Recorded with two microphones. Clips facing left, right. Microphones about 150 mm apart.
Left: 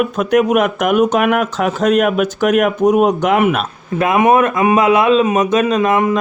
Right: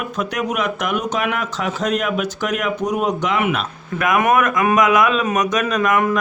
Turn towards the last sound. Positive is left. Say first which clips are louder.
# left 4 dB
turn(degrees=25)  # may be behind; listen again after turning